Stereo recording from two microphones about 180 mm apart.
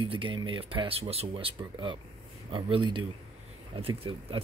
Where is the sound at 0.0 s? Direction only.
30° right (ahead or behind).